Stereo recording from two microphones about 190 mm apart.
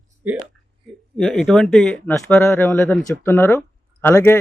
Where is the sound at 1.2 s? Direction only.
5° left (ahead or behind).